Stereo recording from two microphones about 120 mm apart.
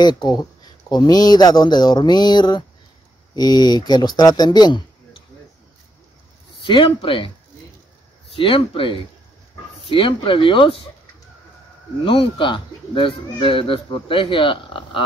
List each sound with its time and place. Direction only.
0.0 s speech: 35° left (ahead or behind)
6.6 s speech: 45° left (ahead or behind)
8.3 s speech: 50° left (ahead or behind)
12.0 s speech: 45° left (ahead or behind)